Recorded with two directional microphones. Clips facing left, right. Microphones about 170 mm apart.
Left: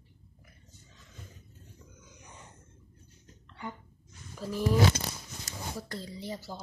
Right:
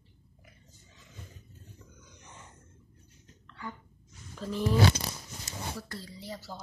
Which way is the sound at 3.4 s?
20° left (ahead or behind).